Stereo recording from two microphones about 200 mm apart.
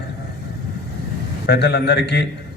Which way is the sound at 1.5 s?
55° left (ahead or behind).